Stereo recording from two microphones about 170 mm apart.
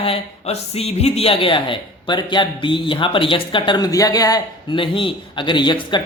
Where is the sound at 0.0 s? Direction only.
35° left (ahead or behind).